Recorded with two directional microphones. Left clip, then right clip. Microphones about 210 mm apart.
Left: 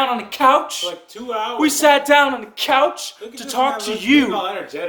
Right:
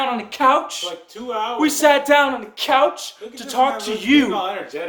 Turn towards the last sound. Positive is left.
turn(degrees=15)  # may be behind; listen again after turning